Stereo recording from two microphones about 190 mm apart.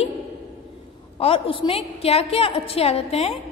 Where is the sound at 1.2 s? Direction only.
30° left (ahead or behind).